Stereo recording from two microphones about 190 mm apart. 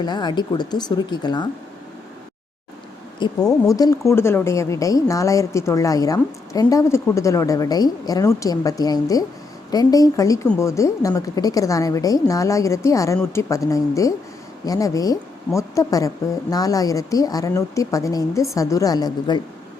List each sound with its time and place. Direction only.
0.0 s speech: 20° left (ahead or behind)
3.2 s speech: 20° left (ahead or behind)